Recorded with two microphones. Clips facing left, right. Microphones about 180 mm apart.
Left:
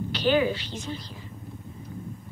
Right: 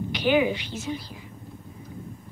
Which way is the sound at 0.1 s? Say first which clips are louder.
Right 1 dB; 15° right (ahead or behind).